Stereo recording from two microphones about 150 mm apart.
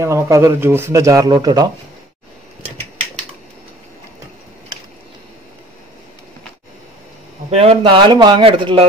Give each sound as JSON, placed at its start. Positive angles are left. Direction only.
{"t": 0.0, "sound": "speech", "side_deg": -20}
{"t": 7.5, "sound": "speech", "side_deg": -40}